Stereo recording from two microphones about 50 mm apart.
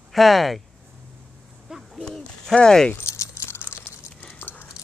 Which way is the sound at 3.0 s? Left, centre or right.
Left.